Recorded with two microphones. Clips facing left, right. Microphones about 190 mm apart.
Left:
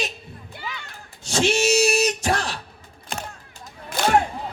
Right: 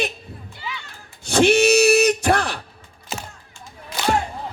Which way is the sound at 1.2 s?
60° right (ahead or behind).